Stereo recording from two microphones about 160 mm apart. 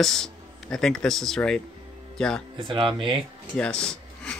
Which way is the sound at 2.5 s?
30° right (ahead or behind).